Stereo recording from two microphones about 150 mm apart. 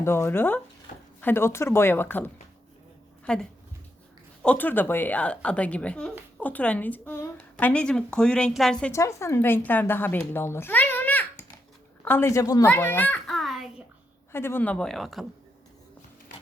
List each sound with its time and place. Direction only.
0.0 s a woman's voice: 15° left (ahead or behind)
4.4 s a woman's voice: 10° left (ahead or behind)
8.9 s a woman's voice: 20° left (ahead or behind)
12.6 s a sound: 15° left (ahead or behind)
14.3 s a woman's voice: 15° left (ahead or behind); by 15.3 s centre (ahead or behind)